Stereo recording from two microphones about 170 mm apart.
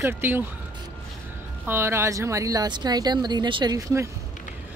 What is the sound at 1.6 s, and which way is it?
Speech, 15° right (ahead or behind).